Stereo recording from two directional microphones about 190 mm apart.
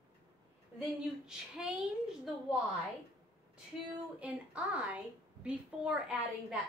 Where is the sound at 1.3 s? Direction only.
5° right (ahead or behind).